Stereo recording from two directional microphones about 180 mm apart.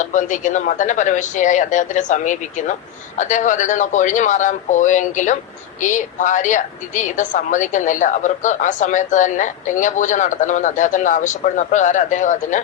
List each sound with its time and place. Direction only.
0.0 s a woman's voice: 45° left (ahead or behind)